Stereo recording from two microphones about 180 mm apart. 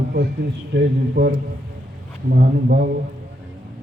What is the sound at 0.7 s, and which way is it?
Speech, 65° right (ahead or behind).